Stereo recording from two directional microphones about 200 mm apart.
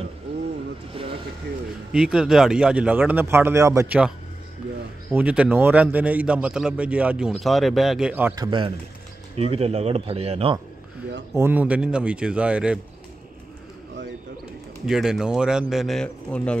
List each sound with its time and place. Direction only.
0.9 s mechanisms: 30° right (ahead or behind)
1.9 s a man's voice: 5° right (ahead or behind)
5.1 s a man's voice: 5° right (ahead or behind)
8.4 s speech: 25° right (ahead or behind)
11.3 s a man's voice: 10° right (ahead or behind)
14.9 s a man's voice: centre (ahead or behind)